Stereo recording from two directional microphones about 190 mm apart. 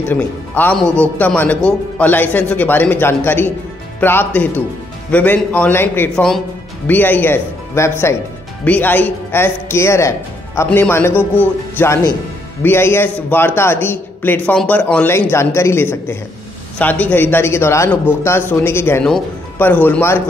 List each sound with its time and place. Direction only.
0.1 s speech: 10° left (ahead or behind)
0.8 s a man's voice: 15° right (ahead or behind)
1.1 s speech: 10° left (ahead or behind)